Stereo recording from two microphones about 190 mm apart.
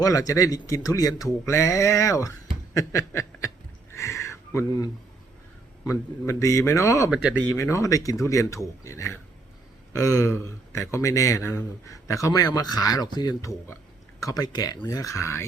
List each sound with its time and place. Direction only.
0.0 s a man's voice: 15° left (ahead or behind)
2.7 s snicker: 15° left (ahead or behind)
3.9 s a sound: 15° left (ahead or behind)
5.8 s a man's voice: 15° left (ahead or behind)
7.1 s speech: 5° right (ahead or behind)
7.5 s a man's voice: 15° left (ahead or behind)